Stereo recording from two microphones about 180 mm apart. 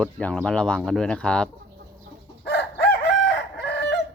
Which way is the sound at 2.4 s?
70° left (ahead or behind).